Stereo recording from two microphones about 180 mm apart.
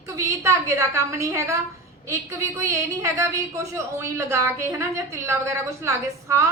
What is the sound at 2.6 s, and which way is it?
A woman's voice, 15° right (ahead or behind).